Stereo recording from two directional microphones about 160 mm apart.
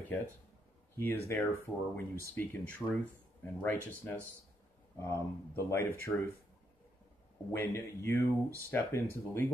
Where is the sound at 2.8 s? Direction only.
5° left (ahead or behind).